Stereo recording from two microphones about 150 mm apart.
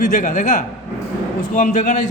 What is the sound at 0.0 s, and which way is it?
A man's voice, 60° left (ahead or behind).